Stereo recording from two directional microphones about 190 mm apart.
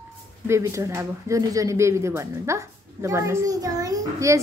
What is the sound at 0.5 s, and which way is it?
A child's voice, 15° right (ahead or behind).